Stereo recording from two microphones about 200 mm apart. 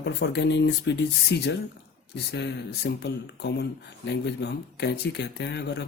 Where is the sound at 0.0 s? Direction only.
60° left (ahead or behind).